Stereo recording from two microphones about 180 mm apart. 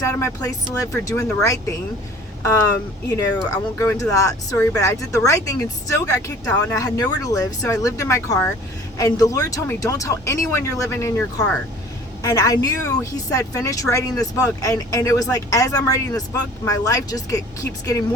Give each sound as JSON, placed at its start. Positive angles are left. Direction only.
{"t": 0.0, "sound": "speech", "side_deg": 15}
{"t": 3.1, "sound": "speech", "side_deg": 20}